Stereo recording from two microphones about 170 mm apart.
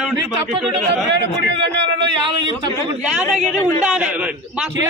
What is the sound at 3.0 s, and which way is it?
A man's voice, 5° right (ahead or behind).